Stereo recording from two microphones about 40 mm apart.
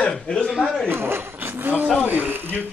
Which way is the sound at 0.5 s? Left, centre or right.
Centre.